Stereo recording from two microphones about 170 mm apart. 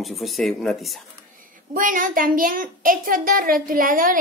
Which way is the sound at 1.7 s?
55° right (ahead or behind).